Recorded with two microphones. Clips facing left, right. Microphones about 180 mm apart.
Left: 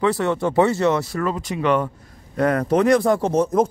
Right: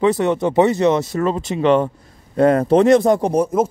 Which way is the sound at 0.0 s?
20° right (ahead or behind).